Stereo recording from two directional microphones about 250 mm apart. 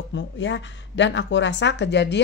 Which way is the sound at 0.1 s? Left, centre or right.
Left.